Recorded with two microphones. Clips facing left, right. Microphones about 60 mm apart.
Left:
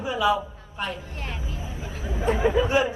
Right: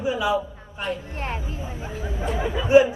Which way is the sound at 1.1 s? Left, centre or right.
Right.